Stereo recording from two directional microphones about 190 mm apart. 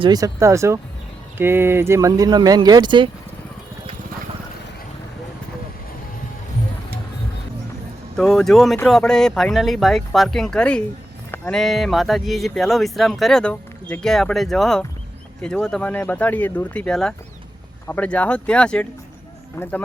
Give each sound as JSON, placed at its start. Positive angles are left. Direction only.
{"t": 0.0, "sound": "speech", "side_deg": -20}
{"t": 8.1, "sound": "speech", "side_deg": 5}
{"t": 11.3, "sound": "a sound", "side_deg": 10}
{"t": 11.6, "sound": "speech", "side_deg": 0}